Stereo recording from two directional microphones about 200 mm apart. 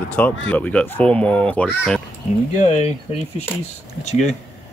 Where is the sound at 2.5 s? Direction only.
35° left (ahead or behind).